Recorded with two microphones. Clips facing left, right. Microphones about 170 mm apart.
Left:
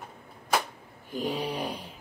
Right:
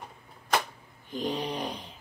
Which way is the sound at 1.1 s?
10° left (ahead or behind).